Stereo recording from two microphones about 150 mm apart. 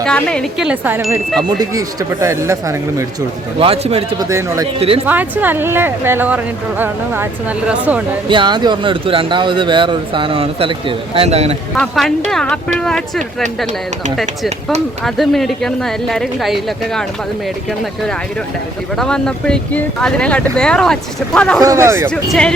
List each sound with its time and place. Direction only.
0.0 s speech: 5° left (ahead or behind)
0.7 s a woman's voice: 15° right (ahead or behind)
1.4 s speech: 25° right (ahead or behind)
3.6 s speech: 40° right (ahead or behind)
4.2 s a woman's voice: 20° right (ahead or behind)
8.3 s speech: 30° right (ahead or behind)
11.8 s speech: centre (ahead or behind)
15.0 s speech: centre (ahead or behind)
18.9 s speech: 5° left (ahead or behind)
21.6 s speech: 20° right (ahead or behind)
22.1 s speech: 5° left (ahead or behind)